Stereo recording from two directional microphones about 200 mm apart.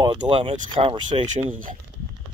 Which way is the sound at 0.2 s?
30° right (ahead or behind).